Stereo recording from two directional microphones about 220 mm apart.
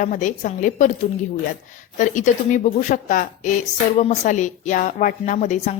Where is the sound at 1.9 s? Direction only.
35° left (ahead or behind).